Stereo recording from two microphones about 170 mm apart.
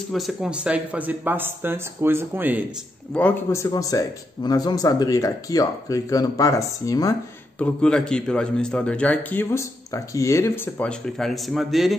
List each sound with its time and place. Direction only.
0.1 s speech: centre (ahead or behind)
3.2 s a man's voice: 10° left (ahead or behind)
3.7 s speech: 20° left (ahead or behind)
7.5 s a man's voice: 5° left (ahead or behind)